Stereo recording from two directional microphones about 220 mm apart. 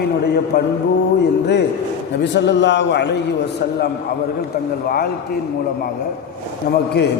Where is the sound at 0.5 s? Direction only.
50° left (ahead or behind).